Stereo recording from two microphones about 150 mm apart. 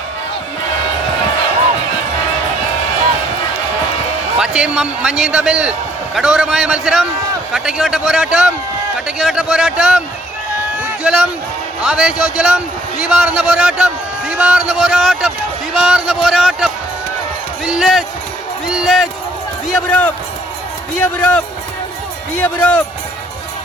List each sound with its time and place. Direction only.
4.4 s a man's voice: 5° right (ahead or behind)
10.8 s a sound: 5° right (ahead or behind)
11.8 s a man's voice: 5° right (ahead or behind)